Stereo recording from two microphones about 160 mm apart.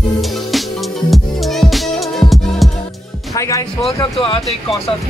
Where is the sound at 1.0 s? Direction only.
Centre (ahead or behind).